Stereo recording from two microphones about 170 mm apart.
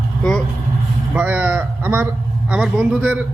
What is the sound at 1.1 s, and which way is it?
Speech, 10° right (ahead or behind).